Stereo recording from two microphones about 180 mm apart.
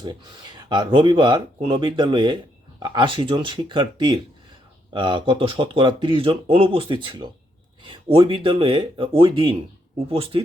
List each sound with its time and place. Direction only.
0.0 s speech: 25° right (ahead or behind)